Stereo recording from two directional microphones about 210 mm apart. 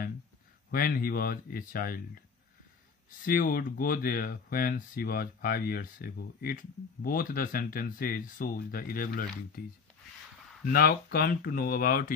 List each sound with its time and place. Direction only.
0.7 s speech: 45° left (ahead or behind)
3.3 s speech: 45° left (ahead or behind)
10.7 s speech: 45° left (ahead or behind)